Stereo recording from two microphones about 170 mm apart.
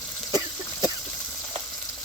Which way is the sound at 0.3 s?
25° right (ahead or behind).